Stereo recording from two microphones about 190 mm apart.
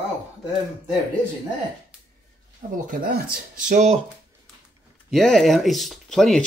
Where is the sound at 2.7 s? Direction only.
50° right (ahead or behind).